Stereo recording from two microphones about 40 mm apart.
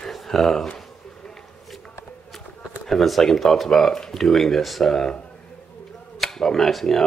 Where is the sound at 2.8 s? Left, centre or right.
Centre.